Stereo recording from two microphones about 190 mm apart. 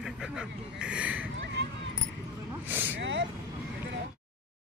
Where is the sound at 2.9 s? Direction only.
75° right (ahead or behind).